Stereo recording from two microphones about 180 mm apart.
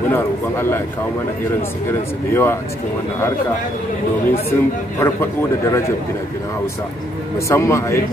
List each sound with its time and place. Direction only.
0.1 s speech: 15° left (ahead or behind)
1.9 s speech: 15° left (ahead or behind)
4.5 s speech: 15° left (ahead or behind)
7.3 s speech: 15° left (ahead or behind)